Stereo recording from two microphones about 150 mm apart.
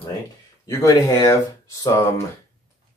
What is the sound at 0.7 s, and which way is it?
Speech, 20° left (ahead or behind).